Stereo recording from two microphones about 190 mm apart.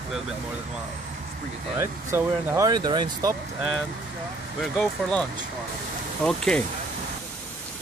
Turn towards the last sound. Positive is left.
turn(degrees=5)  # may be behind; listen again after turning